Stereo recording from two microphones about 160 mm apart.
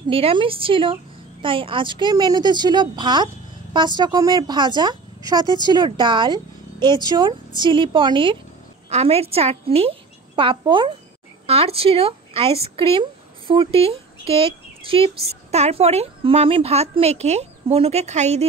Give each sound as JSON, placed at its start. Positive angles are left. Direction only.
{"t": 0.1, "sound": "a woman's voice", "side_deg": -35}